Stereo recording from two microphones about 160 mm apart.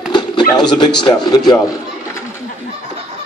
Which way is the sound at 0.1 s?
30° left (ahead or behind).